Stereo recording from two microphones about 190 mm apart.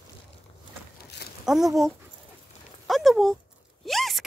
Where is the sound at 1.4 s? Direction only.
Centre (ahead or behind).